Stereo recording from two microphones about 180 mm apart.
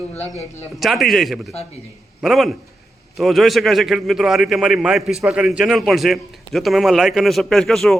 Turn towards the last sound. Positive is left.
turn(degrees=0)  # may be behind; listen again after turning